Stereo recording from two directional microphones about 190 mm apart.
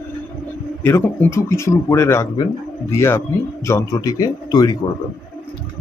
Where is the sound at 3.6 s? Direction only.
15° left (ahead or behind).